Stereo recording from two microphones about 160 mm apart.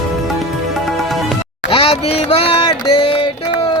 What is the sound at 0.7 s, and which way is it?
Music, centre (ahead or behind).